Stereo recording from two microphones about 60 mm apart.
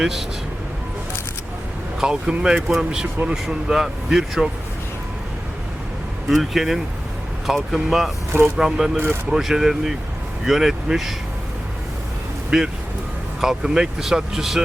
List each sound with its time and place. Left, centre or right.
0.0 s speech: centre
2.0 s speech: centre
6.2 s speech: centre
8.3 s speech: right
8.5 s speech: centre
12.5 s speech: centre